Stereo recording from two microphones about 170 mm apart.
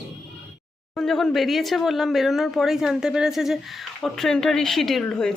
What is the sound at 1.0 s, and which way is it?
A woman's voice, 5° left (ahead or behind).